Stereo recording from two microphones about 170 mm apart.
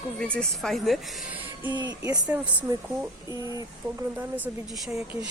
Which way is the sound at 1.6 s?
25° right (ahead or behind).